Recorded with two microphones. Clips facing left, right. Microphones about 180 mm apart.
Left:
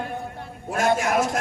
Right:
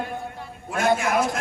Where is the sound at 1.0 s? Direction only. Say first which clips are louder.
Even; 40° left (ahead or behind).